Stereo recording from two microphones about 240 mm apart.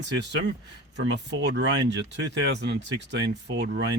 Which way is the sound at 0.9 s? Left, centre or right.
Right.